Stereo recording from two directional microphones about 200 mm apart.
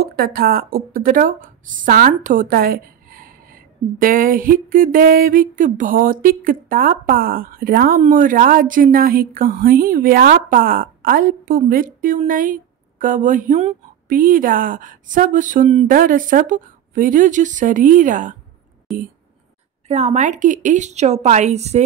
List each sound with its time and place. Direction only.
0.0 s a woman's voice: 50° right (ahead or behind)
19.9 s speech: 35° right (ahead or behind)